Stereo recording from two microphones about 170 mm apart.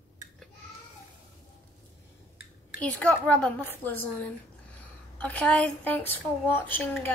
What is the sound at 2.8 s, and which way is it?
A woman's voice, 10° left (ahead or behind).